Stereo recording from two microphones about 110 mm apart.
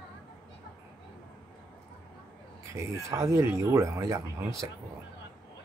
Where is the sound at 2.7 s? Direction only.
25° right (ahead or behind).